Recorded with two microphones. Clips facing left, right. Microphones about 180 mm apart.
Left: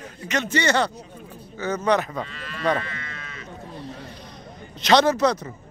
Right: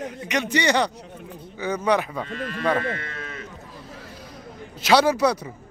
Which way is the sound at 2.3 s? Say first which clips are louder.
Right 2 dB; 50° right (ahead or behind).